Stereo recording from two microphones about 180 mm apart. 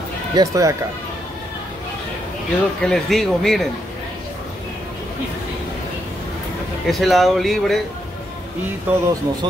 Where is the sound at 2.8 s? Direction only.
Centre (ahead or behind).